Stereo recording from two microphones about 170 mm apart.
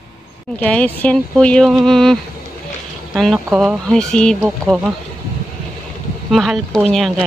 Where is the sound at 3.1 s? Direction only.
Centre (ahead or behind).